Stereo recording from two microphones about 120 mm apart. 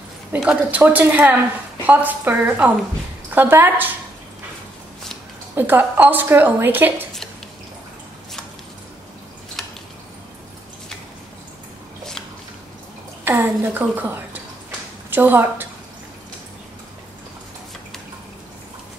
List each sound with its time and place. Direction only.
0.4 s a woman's voice: 10° right (ahead or behind)
5.6 s a woman's voice: 15° right (ahead or behind)
13.2 s a woman's voice: 15° right (ahead or behind)